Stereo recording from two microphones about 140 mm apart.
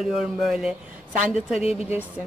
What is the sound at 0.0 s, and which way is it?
Speech, 5° right (ahead or behind).